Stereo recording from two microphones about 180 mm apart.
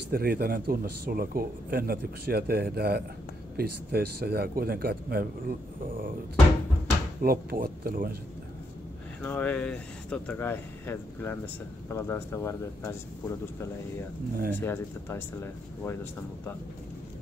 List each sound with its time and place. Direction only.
0.1 s speech: 55° right (ahead or behind)
7.2 s speech: 55° right (ahead or behind)
9.2 s speech: 10° left (ahead or behind)
14.3 s speech: 55° right (ahead or behind)
14.6 s speech: 15° left (ahead or behind)